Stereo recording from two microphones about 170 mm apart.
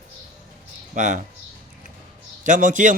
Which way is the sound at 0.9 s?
45° right (ahead or behind).